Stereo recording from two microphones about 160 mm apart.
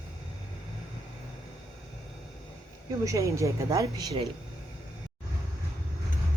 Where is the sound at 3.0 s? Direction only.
20° right (ahead or behind).